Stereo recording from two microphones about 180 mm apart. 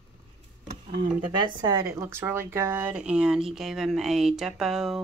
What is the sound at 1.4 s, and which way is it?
Speech, 20° right (ahead or behind).